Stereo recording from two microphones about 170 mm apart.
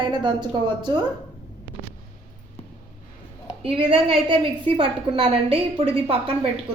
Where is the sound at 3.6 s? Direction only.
35° right (ahead or behind).